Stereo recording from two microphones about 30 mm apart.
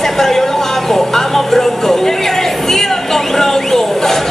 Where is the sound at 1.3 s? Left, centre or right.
Centre.